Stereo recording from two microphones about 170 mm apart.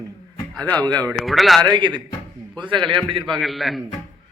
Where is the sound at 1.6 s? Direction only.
25° right (ahead or behind).